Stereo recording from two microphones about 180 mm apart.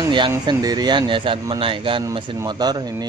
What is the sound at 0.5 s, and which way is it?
Speech, 20° right (ahead or behind).